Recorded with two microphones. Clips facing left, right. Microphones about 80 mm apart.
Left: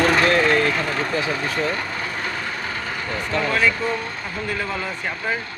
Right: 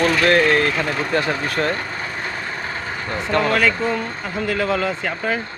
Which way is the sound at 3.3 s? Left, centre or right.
Right.